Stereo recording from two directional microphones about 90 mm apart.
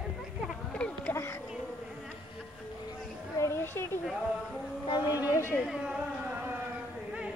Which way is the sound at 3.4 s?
30° left (ahead or behind).